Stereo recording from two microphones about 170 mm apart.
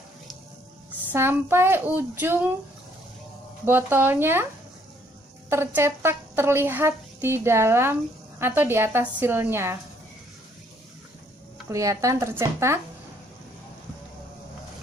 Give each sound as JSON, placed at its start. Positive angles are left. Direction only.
{"t": 1.1, "sound": "speech", "side_deg": -15}
{"t": 3.6, "sound": "speech", "side_deg": -10}
{"t": 5.5, "sound": "speech", "side_deg": -15}
{"t": 11.7, "sound": "speech", "side_deg": -20}